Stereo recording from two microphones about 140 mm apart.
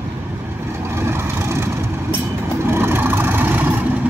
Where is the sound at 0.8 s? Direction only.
15° right (ahead or behind).